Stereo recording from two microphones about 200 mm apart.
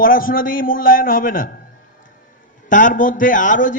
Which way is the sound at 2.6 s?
40° left (ahead or behind).